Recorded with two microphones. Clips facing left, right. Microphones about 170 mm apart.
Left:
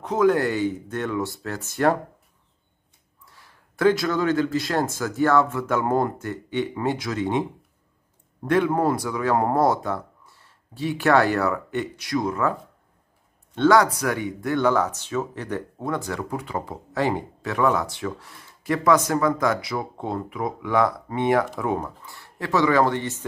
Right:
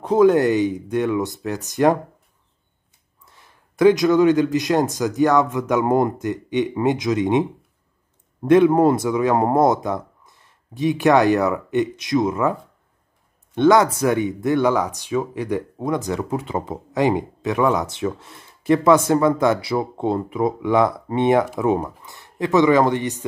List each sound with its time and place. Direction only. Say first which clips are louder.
0.0 s speech: right 5 dB; 30° right (ahead or behind)
3.3 s speech: right 8 dB; 20° right (ahead or behind)
8.5 s speech: right 7 dB; 20° right (ahead or behind)
13.6 s speech: right 3 dB; 20° right (ahead or behind)